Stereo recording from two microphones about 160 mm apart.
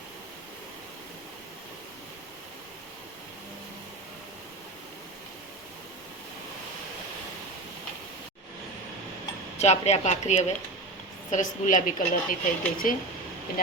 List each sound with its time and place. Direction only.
9.6 s a woman's voice: 45° left (ahead or behind); by 12.9 s 60° left (ahead or behind)